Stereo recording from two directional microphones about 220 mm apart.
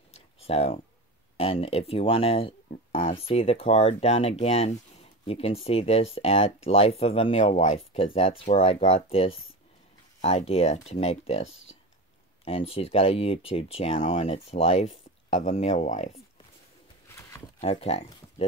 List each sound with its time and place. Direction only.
0.1 s a sound: 30° left (ahead or behind)
1.3 s speech: 25° left (ahead or behind)
12.4 s speech: 25° left (ahead or behind)
17.6 s speech: 25° left (ahead or behind)